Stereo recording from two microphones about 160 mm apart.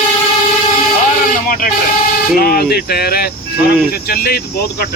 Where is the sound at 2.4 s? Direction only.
70° left (ahead or behind).